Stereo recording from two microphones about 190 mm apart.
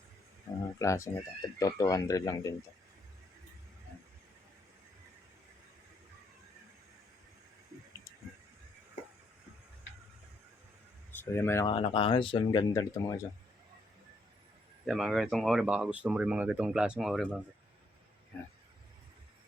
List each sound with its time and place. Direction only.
0.8 s speech: 15° left (ahead or behind)
11.2 s speech: 15° left (ahead or behind)
11.7 s speech: 30° left (ahead or behind)
14.8 s speech: centre (ahead or behind)